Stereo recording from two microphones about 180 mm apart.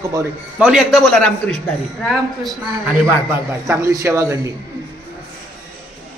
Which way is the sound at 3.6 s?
15° right (ahead or behind).